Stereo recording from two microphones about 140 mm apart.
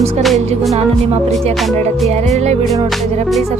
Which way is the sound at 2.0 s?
50° right (ahead or behind).